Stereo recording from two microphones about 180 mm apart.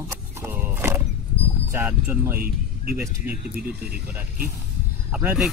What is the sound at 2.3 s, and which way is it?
Speech, 55° right (ahead or behind).